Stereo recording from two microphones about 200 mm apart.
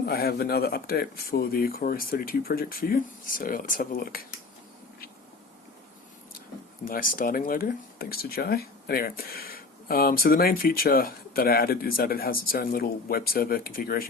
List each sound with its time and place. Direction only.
0.0 s speech: 50° left (ahead or behind)
6.8 s speech: 45° left (ahead or behind)